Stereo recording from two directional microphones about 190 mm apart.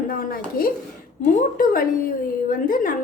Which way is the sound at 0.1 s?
50° left (ahead or behind).